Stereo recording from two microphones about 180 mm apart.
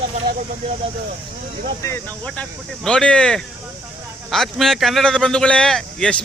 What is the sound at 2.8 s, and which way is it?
A man's voice, 5° left (ahead or behind).